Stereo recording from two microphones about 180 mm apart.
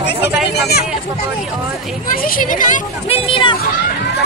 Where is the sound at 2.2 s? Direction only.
50° left (ahead or behind).